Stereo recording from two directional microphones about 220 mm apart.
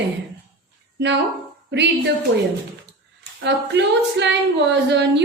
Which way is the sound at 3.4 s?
50° right (ahead or behind).